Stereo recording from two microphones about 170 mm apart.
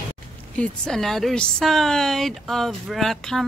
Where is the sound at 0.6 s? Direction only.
5° left (ahead or behind).